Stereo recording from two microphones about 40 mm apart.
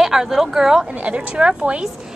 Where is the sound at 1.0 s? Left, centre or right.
Right.